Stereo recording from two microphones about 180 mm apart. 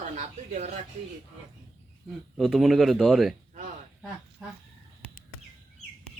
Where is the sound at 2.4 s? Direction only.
Centre (ahead or behind).